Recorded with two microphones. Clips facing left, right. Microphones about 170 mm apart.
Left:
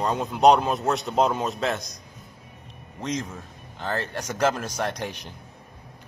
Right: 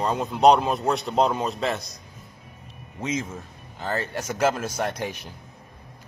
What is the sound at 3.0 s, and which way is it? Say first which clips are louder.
A man's voice: right 1 dB; 5° right (ahead or behind).